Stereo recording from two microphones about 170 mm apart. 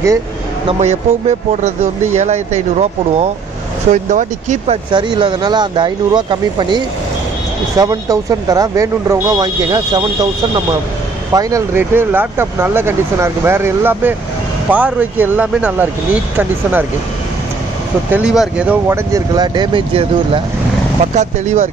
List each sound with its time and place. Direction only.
0.7 s speech: 40° right (ahead or behind)
4.9 s speech: 25° right (ahead or behind)
11.3 s speech: 15° right (ahead or behind)
18.1 s speech: 5° right (ahead or behind)
19.1 s speech: 25° right (ahead or behind)
21.1 s speech: 45° right (ahead or behind)